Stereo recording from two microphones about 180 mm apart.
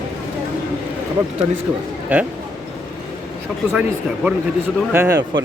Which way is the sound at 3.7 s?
10° right (ahead or behind).